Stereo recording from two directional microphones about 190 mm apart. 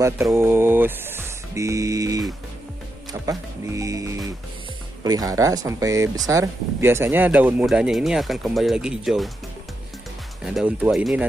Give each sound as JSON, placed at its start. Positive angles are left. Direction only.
{"t": 0.0, "sound": "speech", "side_deg": -15}
{"t": 10.4, "sound": "speech", "side_deg": -5}